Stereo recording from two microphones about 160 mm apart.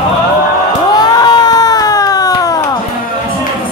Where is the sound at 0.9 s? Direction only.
25° left (ahead or behind).